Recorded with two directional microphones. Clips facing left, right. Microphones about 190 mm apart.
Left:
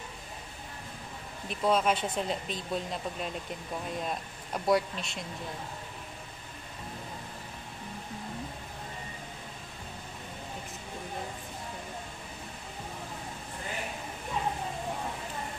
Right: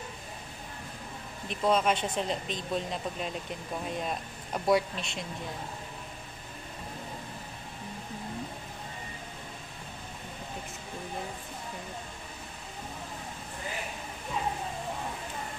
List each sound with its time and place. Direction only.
1.5 s speech: centre (ahead or behind)
4.6 s speech: centre (ahead or behind)